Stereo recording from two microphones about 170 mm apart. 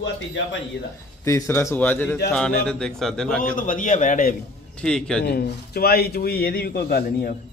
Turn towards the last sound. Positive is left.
turn(degrees=60)  # may be behind; listen again after turning